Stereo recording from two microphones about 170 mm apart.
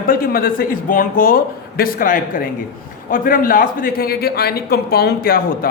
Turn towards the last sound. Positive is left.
turn(degrees=60)  # may be behind; listen again after turning